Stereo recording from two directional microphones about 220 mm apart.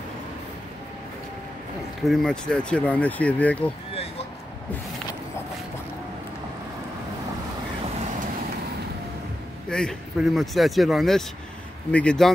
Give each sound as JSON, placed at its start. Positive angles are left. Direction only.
{"t": 2.0, "sound": "speech", "side_deg": 5}
{"t": 9.7, "sound": "speech", "side_deg": 5}